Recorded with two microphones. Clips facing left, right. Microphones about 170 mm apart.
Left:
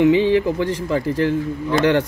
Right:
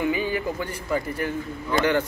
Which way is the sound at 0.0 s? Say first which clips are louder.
Left 10 dB; 90° left.